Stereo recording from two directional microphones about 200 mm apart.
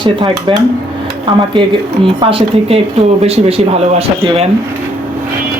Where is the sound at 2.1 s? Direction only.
25° right (ahead or behind).